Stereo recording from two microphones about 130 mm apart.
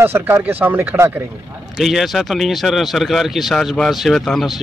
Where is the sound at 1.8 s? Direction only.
Centre (ahead or behind).